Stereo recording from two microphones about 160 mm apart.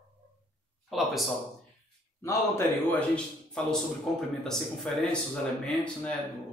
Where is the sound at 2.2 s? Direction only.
15° left (ahead or behind).